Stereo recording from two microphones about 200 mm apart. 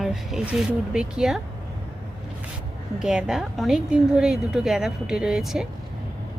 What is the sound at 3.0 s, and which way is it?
A woman's voice, 5° right (ahead or behind).